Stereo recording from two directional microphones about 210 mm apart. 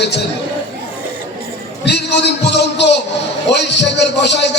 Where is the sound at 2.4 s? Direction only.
55° left (ahead or behind).